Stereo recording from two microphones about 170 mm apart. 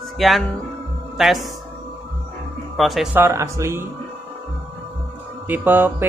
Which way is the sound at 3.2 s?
15° right (ahead or behind).